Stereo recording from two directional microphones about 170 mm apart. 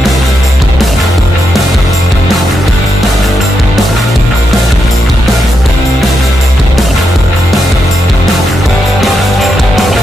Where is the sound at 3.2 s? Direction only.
Centre (ahead or behind).